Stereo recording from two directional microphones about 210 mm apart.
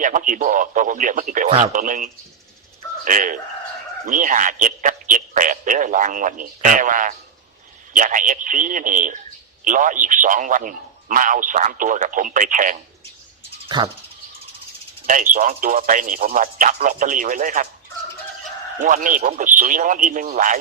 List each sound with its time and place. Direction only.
0.0 s a man's voice: 40° right (ahead or behind)
13.7 s dog: 20° right (ahead or behind)
15.0 s a man's voice: 40° right (ahead or behind)
18.8 s a man's voice: 40° right (ahead or behind)